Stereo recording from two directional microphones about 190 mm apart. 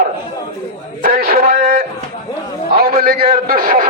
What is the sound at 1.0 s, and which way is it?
Music, 50° right (ahead or behind).